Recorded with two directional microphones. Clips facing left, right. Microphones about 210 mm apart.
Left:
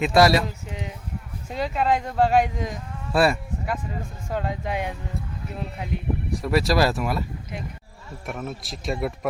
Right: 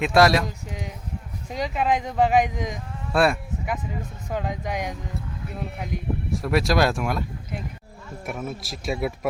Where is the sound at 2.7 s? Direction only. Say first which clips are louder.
Even; centre (ahead or behind).